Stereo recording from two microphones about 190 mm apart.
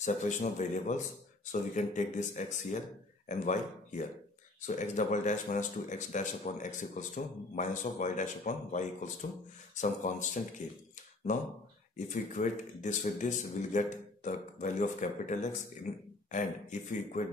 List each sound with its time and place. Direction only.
0.0 s speech: 40° left (ahead or behind)